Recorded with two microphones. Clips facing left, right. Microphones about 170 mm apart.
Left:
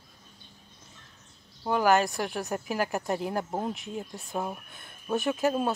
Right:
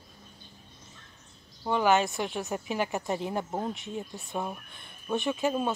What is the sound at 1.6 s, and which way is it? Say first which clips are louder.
Speech: left 1 dB; 5° left (ahead or behind).